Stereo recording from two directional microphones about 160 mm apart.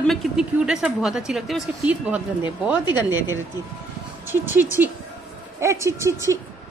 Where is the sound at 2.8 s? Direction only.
25° left (ahead or behind).